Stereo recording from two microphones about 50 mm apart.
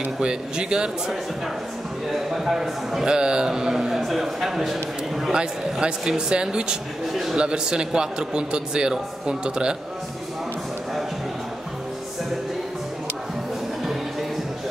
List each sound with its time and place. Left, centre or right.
0.2 s a man's voice: centre
2.0 s a man's voice: centre
5.3 s a man's voice: centre
7.1 s a man's voice: centre
7.3 s a man's voice: centre